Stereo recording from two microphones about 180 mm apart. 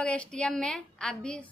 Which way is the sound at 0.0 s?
5° left (ahead or behind).